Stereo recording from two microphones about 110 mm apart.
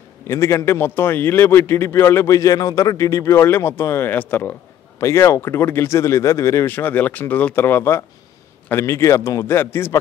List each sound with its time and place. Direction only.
0.3 s a man's voice: 25° left (ahead or behind)